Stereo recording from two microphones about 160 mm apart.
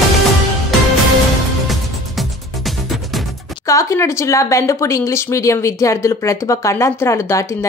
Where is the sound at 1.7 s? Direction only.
Centre (ahead or behind).